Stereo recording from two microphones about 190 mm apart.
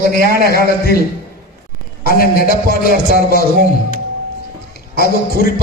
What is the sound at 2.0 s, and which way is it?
A man's voice, 50° left (ahead or behind).